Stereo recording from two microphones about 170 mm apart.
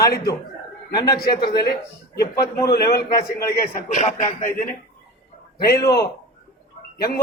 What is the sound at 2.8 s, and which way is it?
Speech, 20° left (ahead or behind).